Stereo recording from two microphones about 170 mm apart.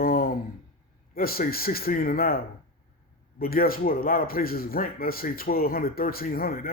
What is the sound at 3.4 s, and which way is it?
Speech, 60° left (ahead or behind).